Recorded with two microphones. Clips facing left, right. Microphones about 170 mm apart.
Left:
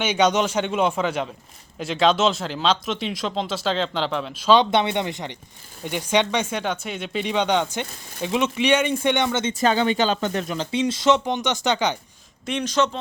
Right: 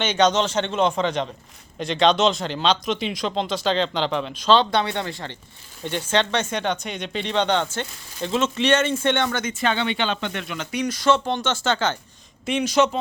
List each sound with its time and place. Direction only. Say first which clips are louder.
0.0 s speech: even; 10° left (ahead or behind)
9.5 s speech: left 4 dB; 40° left (ahead or behind); by 11.9 s 15° left (ahead or behind)
12.5 s speech: right 3 dB; 5° right (ahead or behind)